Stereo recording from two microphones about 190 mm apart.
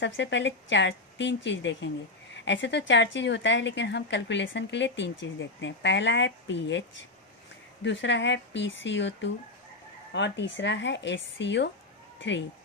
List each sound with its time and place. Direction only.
0.0 s speech: 70° left (ahead or behind)
7.9 s speech: 70° left (ahead or behind)